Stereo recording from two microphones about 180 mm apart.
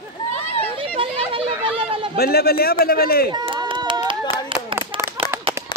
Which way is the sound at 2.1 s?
60° left (ahead or behind).